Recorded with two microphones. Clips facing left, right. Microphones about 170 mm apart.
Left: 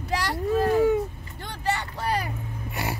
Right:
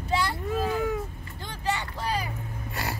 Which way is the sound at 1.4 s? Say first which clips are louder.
Left 2 dB; 65° left (ahead or behind).